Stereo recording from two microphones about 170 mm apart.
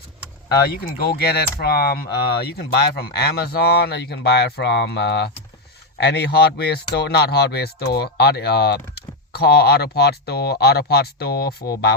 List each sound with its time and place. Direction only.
0.4 s speech: 65° left (ahead or behind)